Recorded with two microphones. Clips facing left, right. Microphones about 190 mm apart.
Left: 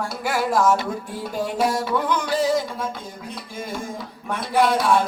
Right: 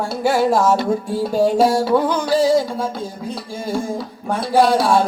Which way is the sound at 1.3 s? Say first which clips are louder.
Right 8 dB; 30° right (ahead or behind).